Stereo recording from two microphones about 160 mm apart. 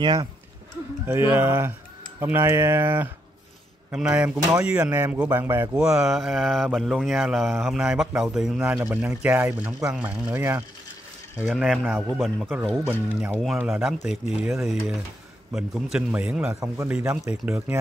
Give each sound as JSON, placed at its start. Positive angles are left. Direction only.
{"t": 0.0, "sound": "speech", "side_deg": -25}
{"t": 1.0, "sound": "speech", "side_deg": -15}
{"t": 5.8, "sound": "speech", "side_deg": -5}
{"t": 8.5, "sound": "speech", "side_deg": -15}
{"t": 12.1, "sound": "speech", "side_deg": 0}
{"t": 12.8, "sound": "speech", "side_deg": -10}